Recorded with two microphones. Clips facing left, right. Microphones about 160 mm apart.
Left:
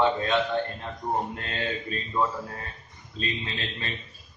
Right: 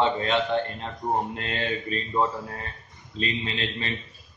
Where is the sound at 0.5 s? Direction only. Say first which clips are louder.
Right 2 dB; centre (ahead or behind).